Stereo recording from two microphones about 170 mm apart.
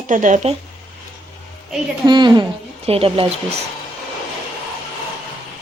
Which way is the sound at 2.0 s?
25° right (ahead or behind).